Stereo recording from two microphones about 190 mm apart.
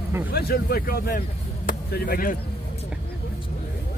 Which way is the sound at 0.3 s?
55° left (ahead or behind).